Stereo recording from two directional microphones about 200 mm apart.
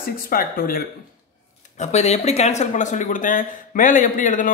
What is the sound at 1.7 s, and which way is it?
A woman's voice, 35° left (ahead or behind).